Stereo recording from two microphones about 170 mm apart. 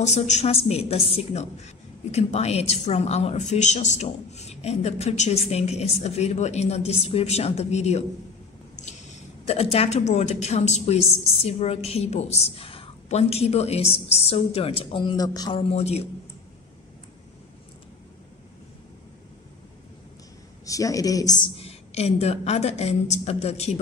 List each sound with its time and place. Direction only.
0.0 s a woman's voice: 40° left (ahead or behind)
9.5 s a woman's voice: 35° left (ahead or behind)
15.7 s a woman's voice: 40° left (ahead or behind)
20.6 s speech: 20° left (ahead or behind)
21.5 s a woman's voice: 35° left (ahead or behind)